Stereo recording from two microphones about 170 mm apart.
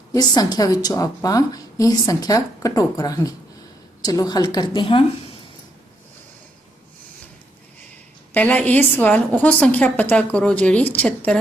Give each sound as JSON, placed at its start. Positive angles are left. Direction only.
{"t": 0.1, "sound": "a woman's voice", "side_deg": 25}
{"t": 8.3, "sound": "a woman's voice", "side_deg": 10}